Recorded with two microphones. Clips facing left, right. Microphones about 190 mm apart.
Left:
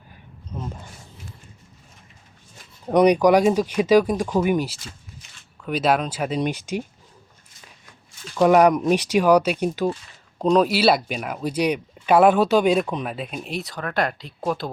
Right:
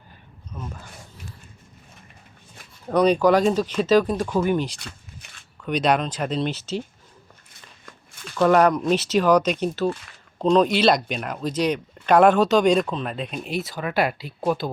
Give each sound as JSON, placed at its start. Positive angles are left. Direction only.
{"t": 0.5, "sound": "speech", "side_deg": 25}
{"t": 2.8, "sound": "speech", "side_deg": 15}
{"t": 4.8, "sound": "a sound", "side_deg": -65}
{"t": 5.6, "sound": "speech", "side_deg": 5}
{"t": 8.4, "sound": "speech", "side_deg": 10}